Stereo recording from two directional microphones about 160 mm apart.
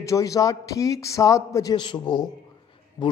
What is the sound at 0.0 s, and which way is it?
A man's voice, 20° left (ahead or behind).